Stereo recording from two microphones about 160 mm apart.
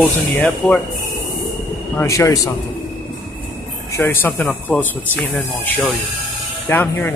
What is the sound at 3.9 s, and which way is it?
Speech, 15° left (ahead or behind).